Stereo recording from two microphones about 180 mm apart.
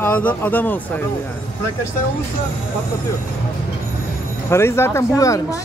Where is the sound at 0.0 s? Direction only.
10° left (ahead or behind).